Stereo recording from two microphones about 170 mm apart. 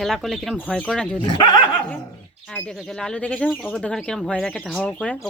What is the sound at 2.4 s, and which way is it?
Speech, 5° left (ahead or behind).